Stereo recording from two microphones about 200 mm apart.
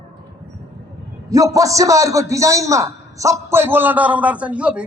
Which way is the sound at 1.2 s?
15° right (ahead or behind).